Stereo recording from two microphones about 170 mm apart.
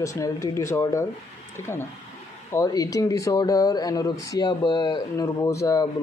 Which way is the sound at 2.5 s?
20° left (ahead or behind).